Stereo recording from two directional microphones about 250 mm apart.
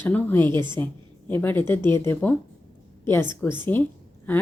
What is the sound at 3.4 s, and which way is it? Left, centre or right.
Speech, centre.